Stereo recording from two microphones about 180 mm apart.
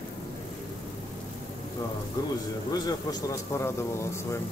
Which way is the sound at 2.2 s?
20° left (ahead or behind).